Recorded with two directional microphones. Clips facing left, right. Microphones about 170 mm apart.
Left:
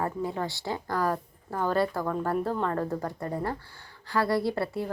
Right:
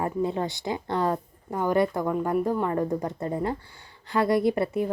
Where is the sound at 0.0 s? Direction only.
20° right (ahead or behind).